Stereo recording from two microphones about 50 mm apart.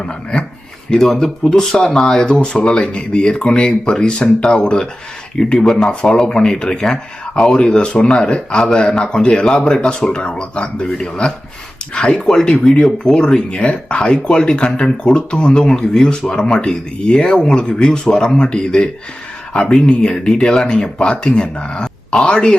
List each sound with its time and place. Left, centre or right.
0.0 s speech: centre
1.0 s speech: centre
19.9 s speech: centre